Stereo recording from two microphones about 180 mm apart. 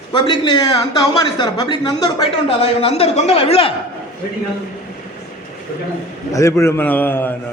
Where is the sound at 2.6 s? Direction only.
35° left (ahead or behind).